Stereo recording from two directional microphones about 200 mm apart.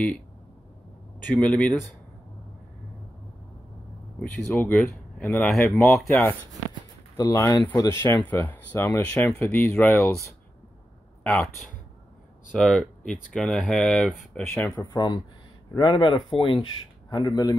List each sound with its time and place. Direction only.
1.2 s speech: 5° left (ahead or behind)
4.5 s speech: 10° left (ahead or behind)
11.2 s speech: 5° left (ahead or behind)
12.5 s speech: 5° left (ahead or behind)
14.9 s speech: 20° left (ahead or behind)